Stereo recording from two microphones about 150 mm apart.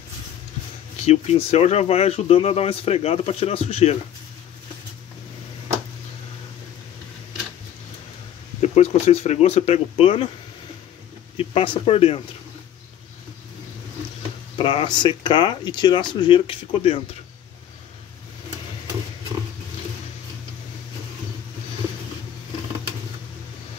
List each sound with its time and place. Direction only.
1.0 s speech: 45° left (ahead or behind)
8.6 s speech: 45° left (ahead or behind)
11.3 s speech: 40° left (ahead or behind)
14.6 s speech: 35° left (ahead or behind)